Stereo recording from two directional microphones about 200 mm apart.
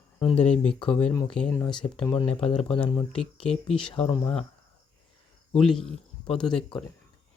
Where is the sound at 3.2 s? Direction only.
5° left (ahead or behind).